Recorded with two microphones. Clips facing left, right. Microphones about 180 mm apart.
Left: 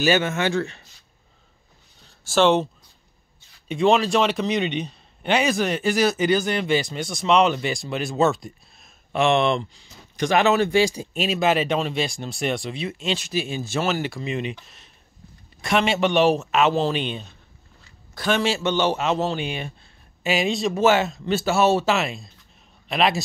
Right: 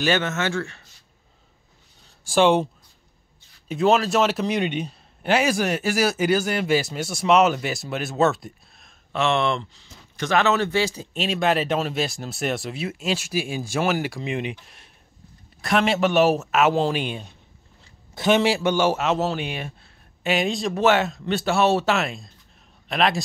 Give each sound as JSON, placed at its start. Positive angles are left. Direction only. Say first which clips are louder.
{"t": 0.0, "sound": "speech", "louder": "left 2 dB", "side_deg": 10}
{"t": 2.2, "sound": "a man's voice", "louder": "even", "side_deg": -10}
{"t": 9.1, "sound": "speech", "louder": "left 3 dB", "side_deg": 15}
{"t": 15.6, "sound": "a man's voice", "louder": "even", "side_deg": 0}